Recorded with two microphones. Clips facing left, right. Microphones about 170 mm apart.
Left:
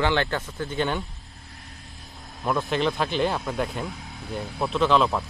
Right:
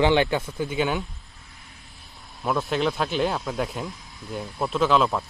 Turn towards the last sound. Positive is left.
turn(degrees=0)  # may be behind; listen again after turning